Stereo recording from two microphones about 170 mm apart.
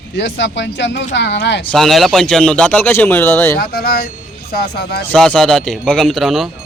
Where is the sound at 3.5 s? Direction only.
65° left (ahead or behind).